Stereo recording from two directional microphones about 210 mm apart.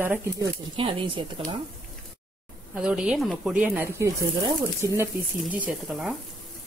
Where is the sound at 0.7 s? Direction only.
25° right (ahead or behind).